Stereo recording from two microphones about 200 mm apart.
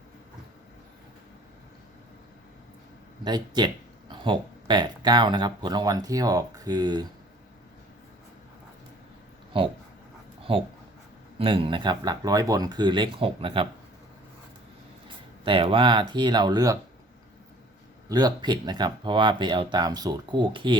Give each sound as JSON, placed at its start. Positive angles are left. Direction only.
{"t": 3.2, "sound": "speech", "side_deg": -20}
{"t": 10.5, "sound": "speech", "side_deg": -25}
{"t": 15.0, "sound": "speech", "side_deg": -25}
{"t": 18.1, "sound": "speech", "side_deg": -20}